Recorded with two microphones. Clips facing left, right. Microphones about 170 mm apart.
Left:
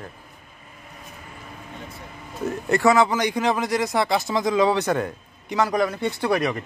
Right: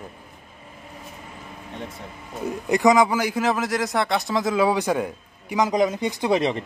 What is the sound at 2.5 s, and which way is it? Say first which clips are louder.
A man's voice: right 1 dB; 15° right (ahead or behind).